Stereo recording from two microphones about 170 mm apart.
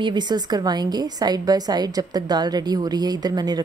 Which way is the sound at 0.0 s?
25° right (ahead or behind).